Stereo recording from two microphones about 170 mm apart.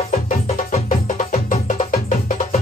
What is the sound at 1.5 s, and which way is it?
Music, 50° left (ahead or behind).